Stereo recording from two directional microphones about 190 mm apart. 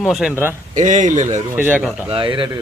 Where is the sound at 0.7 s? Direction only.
40° right (ahead or behind).